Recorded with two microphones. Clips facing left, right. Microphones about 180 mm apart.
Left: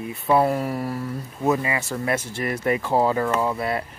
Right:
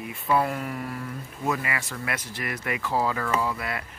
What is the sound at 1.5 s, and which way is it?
Speech, 25° left (ahead or behind).